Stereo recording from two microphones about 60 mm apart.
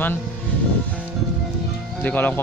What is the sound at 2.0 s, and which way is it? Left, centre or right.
Speech, left.